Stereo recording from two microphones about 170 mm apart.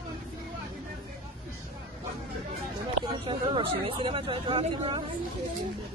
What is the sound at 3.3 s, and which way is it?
Speech, 30° right (ahead or behind).